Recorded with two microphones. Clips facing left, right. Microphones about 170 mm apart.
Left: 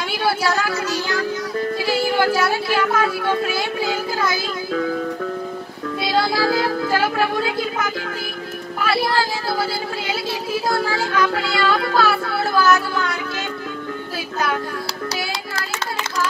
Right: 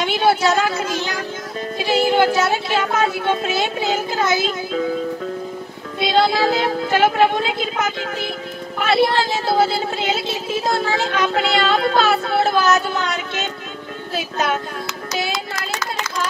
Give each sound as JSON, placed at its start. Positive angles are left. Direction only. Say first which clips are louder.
{"t": 0.0, "sound": "speech", "louder": "right 4 dB", "side_deg": -20}
{"t": 5.9, "sound": "speech", "louder": "right 3 dB", "side_deg": -20}